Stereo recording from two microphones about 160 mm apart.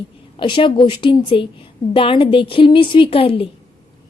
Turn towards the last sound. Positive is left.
turn(degrees=35)  # may be behind; listen again after turning